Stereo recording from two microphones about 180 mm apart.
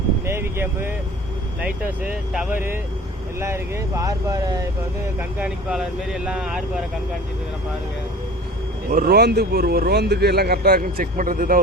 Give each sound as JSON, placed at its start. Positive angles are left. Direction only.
{"t": 0.3, "sound": "vehicle", "side_deg": -15}
{"t": 1.6, "sound": "speech", "side_deg": -5}
{"t": 5.4, "sound": "speech", "side_deg": -5}
{"t": 8.9, "sound": "speech", "side_deg": -55}